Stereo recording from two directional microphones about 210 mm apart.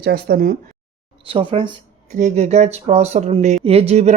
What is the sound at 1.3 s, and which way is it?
Speech, 25° right (ahead or behind).